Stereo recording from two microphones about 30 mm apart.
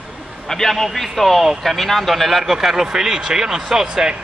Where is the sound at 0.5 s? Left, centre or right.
Centre.